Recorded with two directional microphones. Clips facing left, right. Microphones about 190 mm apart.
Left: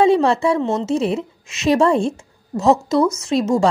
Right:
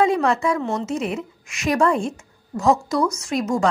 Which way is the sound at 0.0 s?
30° left (ahead or behind).